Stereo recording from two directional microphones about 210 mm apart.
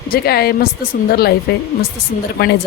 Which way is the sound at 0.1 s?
50° left (ahead or behind).